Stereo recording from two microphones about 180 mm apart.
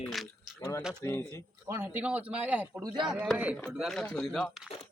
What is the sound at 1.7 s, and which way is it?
Speech, 10° right (ahead or behind).